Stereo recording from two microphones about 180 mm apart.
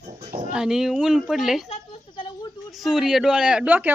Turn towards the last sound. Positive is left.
turn(degrees=-10)  # may be behind; listen again after turning